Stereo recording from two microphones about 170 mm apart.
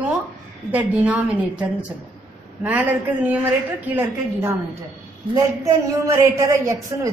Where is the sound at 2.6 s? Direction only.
10° right (ahead or behind).